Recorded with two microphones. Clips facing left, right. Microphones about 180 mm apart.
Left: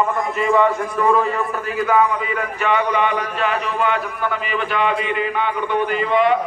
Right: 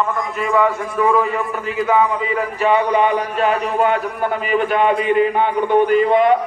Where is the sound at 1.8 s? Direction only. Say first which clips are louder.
Right 1 dB; 25° right (ahead or behind); by 6.3 s 45° right (ahead or behind).